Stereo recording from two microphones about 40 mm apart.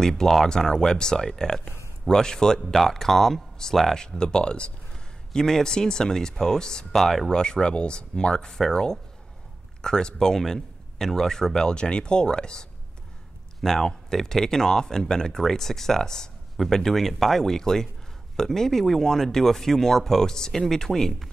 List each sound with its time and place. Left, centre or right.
0.0 s speech: centre
2.6 s speech: centre; by 12.6 s left
13.6 s speech: centre